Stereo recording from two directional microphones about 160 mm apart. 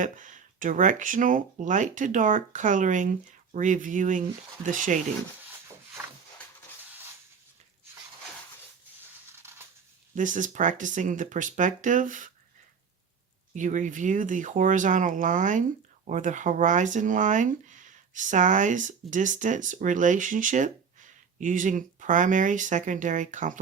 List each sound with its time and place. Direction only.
0.0 s speech: 50° right (ahead or behind)
9.3 s a sound: 15° right (ahead or behind)
10.2 s speech: 55° right (ahead or behind)
13.5 s speech: 50° right (ahead or behind)